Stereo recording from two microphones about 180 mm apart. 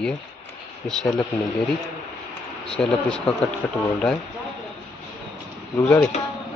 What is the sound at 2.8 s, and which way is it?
Speech, 5° left (ahead or behind).